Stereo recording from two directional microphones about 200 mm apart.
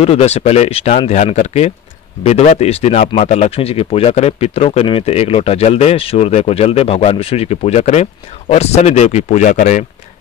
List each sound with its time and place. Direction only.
0.0 s speech: 30° left (ahead or behind)